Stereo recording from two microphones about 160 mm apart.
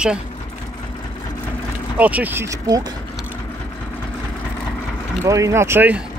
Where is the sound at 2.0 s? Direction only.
10° right (ahead or behind).